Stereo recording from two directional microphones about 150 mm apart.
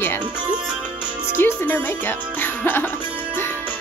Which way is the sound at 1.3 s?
15° left (ahead or behind).